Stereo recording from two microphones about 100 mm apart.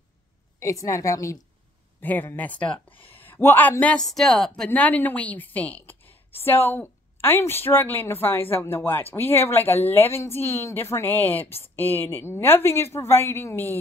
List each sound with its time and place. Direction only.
0.6 s a woman's voice: 30° left (ahead or behind)
2.0 s speech: 20° left (ahead or behind)
3.8 s a woman's voice: 5° left (ahead or behind)
4.6 s a woman's voice: 15° left (ahead or behind)